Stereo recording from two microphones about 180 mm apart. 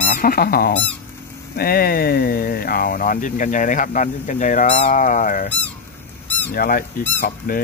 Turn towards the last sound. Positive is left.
turn(degrees=50)  # may be behind; listen again after turning